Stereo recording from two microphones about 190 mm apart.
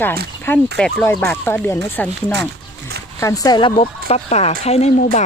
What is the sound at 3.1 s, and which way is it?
Speech, 15° left (ahead or behind).